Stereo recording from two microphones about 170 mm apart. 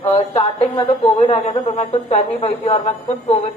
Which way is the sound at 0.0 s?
30° left (ahead or behind).